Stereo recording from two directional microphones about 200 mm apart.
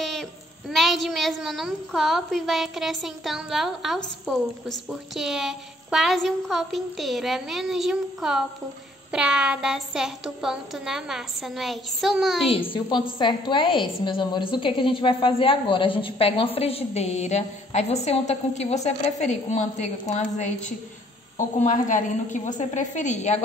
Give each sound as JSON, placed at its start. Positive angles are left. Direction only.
{"t": 0.0, "sound": "a woman's voice", "side_deg": 0}
{"t": 12.4, "sound": "a woman's voice", "side_deg": 25}